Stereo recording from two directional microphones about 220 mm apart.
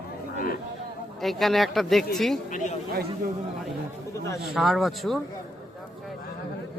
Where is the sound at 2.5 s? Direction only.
35° left (ahead or behind).